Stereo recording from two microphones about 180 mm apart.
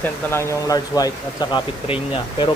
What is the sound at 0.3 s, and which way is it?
Speech, 15° left (ahead or behind).